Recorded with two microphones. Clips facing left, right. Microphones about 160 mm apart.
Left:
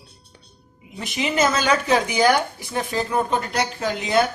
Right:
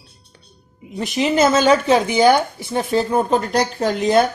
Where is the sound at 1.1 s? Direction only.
30° right (ahead or behind).